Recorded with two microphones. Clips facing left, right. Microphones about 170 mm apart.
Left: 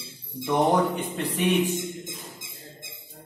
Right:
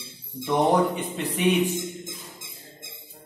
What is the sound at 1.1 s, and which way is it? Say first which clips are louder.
Speech: right 1 dB; 10° right (ahead or behind).